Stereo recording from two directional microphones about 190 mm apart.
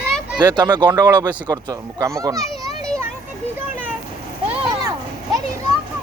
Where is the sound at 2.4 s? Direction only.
Centre (ahead or behind).